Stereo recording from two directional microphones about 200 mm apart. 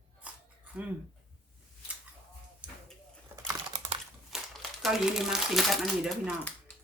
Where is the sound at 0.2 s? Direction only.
5° right (ahead or behind).